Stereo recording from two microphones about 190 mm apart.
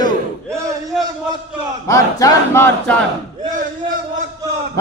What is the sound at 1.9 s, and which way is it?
Battle cry, 15° left (ahead or behind).